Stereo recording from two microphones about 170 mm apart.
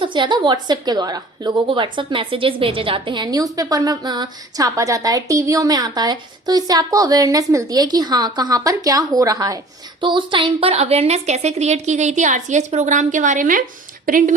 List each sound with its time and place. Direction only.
0.0 s a woman's voice: 30° right (ahead or behind); by 14.3 s 50° right (ahead or behind)